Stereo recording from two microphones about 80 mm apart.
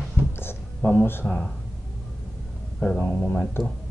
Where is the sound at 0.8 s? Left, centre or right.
Left.